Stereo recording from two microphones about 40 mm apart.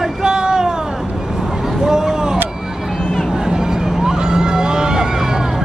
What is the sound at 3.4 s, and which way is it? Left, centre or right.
Vehicle, centre.